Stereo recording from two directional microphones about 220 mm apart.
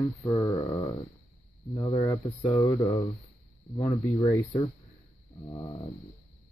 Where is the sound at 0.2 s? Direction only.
20° left (ahead or behind).